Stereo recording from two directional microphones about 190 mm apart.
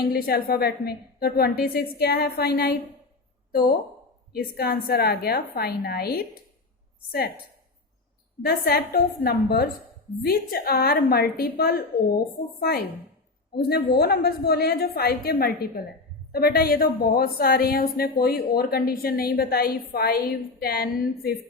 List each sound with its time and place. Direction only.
0.1 s a woman's voice: 55° left (ahead or behind)
4.3 s a woman's voice: 55° left (ahead or behind)
8.4 s a woman's voice: 50° left (ahead or behind)